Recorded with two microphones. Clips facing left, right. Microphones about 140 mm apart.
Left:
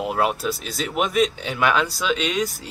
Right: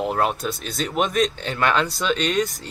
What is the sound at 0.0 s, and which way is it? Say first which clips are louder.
Speech: even; 5° left (ahead or behind).